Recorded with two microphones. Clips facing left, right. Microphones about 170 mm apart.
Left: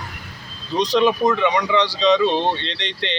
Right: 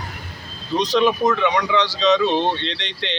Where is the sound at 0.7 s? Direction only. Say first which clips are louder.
Left 1 dB; centre (ahead or behind).